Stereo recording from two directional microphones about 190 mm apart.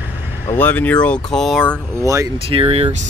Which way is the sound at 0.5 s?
10° left (ahead or behind).